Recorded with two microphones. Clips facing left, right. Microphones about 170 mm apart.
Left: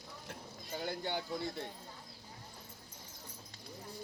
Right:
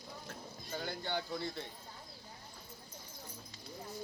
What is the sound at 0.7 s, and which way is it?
Speech, 10° left (ahead or behind).